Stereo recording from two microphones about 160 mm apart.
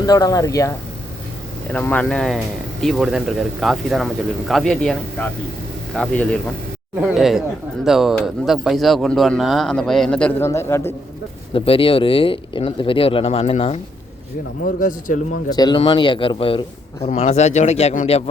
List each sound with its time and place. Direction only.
0.0 s speech: 20° left (ahead or behind)
1.7 s speech: 10° left (ahead or behind)
11.5 s speech: 35° left (ahead or behind)
14.8 s a man's voice: 55° left (ahead or behind)
15.4 s speech: 25° left (ahead or behind); by 18.2 s 40° left (ahead or behind)